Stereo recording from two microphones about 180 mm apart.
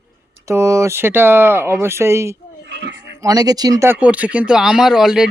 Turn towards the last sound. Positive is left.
turn(degrees=-5)  # may be behind; listen again after turning